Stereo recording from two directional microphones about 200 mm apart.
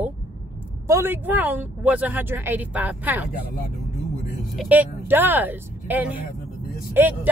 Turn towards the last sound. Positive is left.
turn(degrees=-10)  # may be behind; listen again after turning